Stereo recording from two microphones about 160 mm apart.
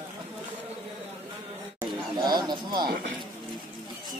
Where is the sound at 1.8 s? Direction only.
25° right (ahead or behind).